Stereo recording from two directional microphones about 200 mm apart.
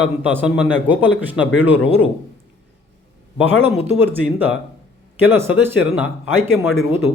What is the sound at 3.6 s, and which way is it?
Speech, 10° right (ahead or behind).